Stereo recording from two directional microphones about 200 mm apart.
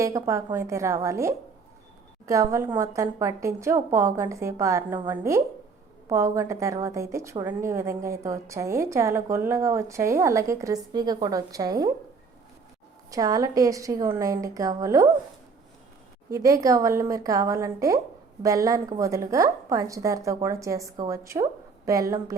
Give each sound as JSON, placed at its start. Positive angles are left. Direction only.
{"t": 0.0, "sound": "a woman's voice", "side_deg": -15}
{"t": 13.1, "sound": "a woman's voice", "side_deg": -20}
{"t": 16.3, "sound": "a woman's voice", "side_deg": -15}